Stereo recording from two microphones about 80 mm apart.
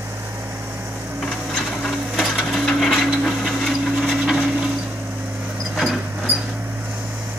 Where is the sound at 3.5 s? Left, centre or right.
Centre.